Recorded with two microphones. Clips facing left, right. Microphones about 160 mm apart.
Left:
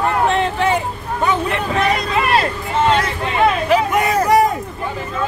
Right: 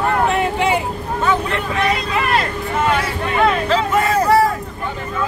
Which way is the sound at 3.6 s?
15° left (ahead or behind).